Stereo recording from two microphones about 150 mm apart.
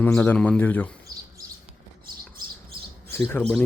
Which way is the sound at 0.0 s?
10° left (ahead or behind).